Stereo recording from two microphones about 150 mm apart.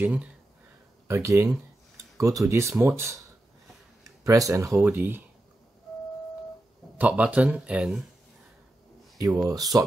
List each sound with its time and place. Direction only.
0.0 s speech: 10° right (ahead or behind)
1.0 s speech: 20° right (ahead or behind)
4.0 s speech: 20° right (ahead or behind)
7.0 s speech: 10° right (ahead or behind)
9.5 s speech: 25° right (ahead or behind)